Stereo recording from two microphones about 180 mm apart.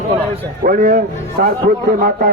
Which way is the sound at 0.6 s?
50° right (ahead or behind).